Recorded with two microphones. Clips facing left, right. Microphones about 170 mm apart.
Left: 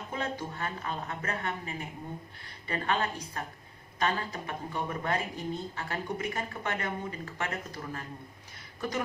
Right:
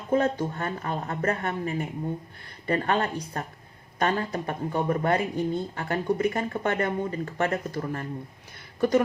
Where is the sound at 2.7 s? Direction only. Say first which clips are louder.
Right 6 dB; 45° right (ahead or behind).